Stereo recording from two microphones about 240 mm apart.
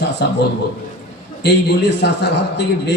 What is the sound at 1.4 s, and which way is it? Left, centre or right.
A man's voice, left.